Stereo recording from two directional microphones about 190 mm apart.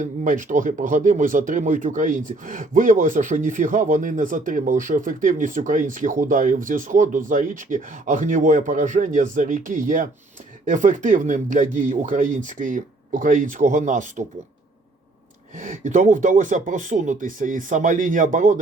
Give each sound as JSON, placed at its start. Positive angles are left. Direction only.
{"t": 0.0, "sound": "speech", "side_deg": -45}
{"t": 15.5, "sound": "speech", "side_deg": -40}